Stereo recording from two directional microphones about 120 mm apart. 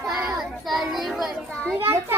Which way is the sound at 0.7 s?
Centre (ahead or behind).